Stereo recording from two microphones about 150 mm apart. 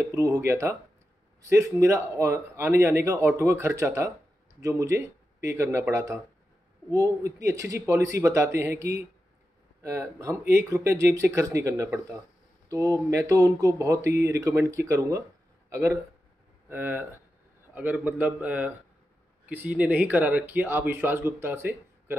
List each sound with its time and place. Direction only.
0.0 s speech: 20° right (ahead or behind)